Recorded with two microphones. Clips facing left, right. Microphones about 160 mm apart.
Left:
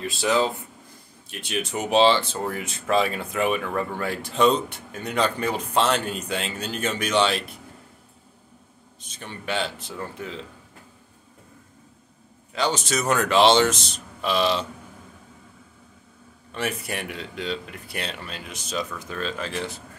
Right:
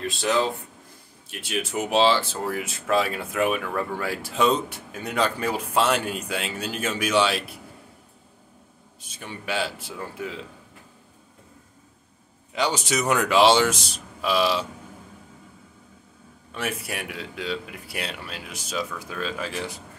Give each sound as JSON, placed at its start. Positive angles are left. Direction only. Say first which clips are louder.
{"t": 0.0, "sound": "speech", "louder": "left 1 dB", "side_deg": 5}
{"t": 1.3, "sound": "speech", "louder": "even", "side_deg": -5}
{"t": 9.0, "sound": "speech", "louder": "even", "side_deg": -10}
{"t": 12.5, "sound": "speech", "louder": "even", "side_deg": -15}
{"t": 16.5, "sound": "speech", "louder": "left 1 dB", "side_deg": -5}